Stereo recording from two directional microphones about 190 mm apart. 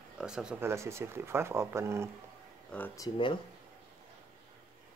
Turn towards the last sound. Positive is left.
turn(degrees=25)  # may be behind; listen again after turning